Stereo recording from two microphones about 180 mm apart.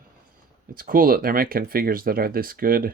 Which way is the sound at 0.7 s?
55° right (ahead or behind).